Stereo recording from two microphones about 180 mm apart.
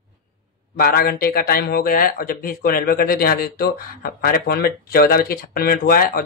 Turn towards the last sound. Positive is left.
turn(degrees=55)  # may be behind; listen again after turning